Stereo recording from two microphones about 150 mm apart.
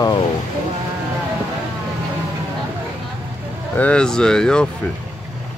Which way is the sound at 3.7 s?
10° left (ahead or behind).